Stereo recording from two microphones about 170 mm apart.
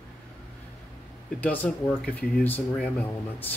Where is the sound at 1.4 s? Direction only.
10° left (ahead or behind).